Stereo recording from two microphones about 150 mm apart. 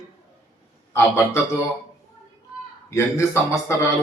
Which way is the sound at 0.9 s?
15° left (ahead or behind).